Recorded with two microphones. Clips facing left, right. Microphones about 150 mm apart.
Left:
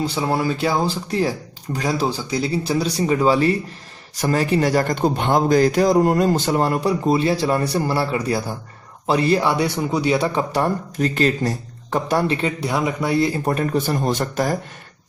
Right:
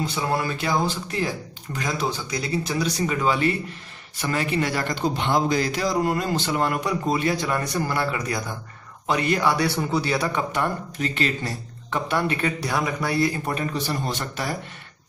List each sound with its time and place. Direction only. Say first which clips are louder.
0.0 s a man's voice: left 4 dB; 30° left (ahead or behind)
12.4 s speech: left 3 dB; 25° left (ahead or behind)
13.5 s speech: left 6 dB; 45° left (ahead or behind)